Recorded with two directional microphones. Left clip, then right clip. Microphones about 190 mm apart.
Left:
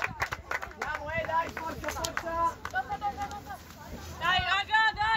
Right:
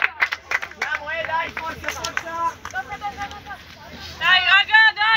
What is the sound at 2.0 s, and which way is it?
Speech, 35° right (ahead or behind).